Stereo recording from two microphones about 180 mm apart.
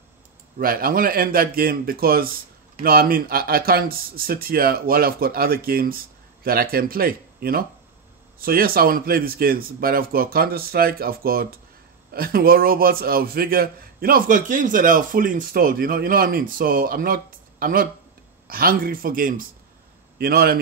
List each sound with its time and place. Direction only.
0.6 s a man's voice: 55° right (ahead or behind)